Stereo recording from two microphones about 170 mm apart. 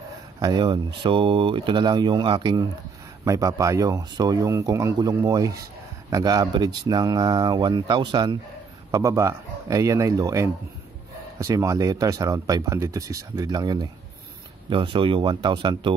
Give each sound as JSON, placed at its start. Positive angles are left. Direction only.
{"t": 0.4, "sound": "speech", "side_deg": -25}